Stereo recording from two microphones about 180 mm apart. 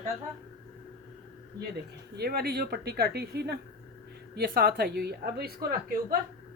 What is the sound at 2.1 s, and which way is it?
A woman's voice, 60° right (ahead or behind).